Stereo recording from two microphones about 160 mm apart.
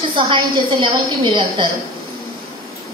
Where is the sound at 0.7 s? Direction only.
30° right (ahead or behind).